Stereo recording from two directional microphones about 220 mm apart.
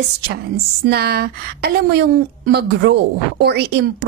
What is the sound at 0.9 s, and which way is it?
A woman's voice, 45° right (ahead or behind).